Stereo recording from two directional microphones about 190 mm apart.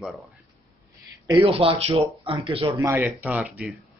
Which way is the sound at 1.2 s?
30° right (ahead or behind).